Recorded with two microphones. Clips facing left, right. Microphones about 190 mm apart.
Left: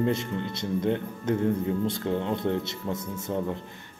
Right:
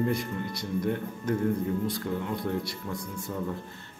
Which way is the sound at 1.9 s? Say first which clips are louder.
Left 4 dB; 25° left (ahead or behind).